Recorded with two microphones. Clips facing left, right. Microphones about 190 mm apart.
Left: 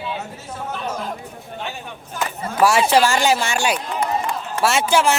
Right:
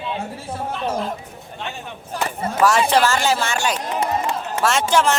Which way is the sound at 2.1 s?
35° right (ahead or behind).